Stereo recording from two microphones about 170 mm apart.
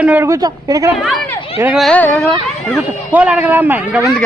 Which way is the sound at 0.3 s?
20° right (ahead or behind).